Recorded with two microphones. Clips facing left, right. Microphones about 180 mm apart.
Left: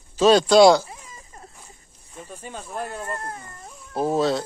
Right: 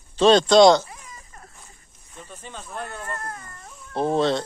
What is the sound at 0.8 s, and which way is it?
Baby cry, 25° left (ahead or behind).